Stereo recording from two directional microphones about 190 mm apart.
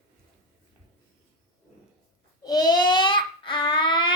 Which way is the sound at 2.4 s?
20° left (ahead or behind).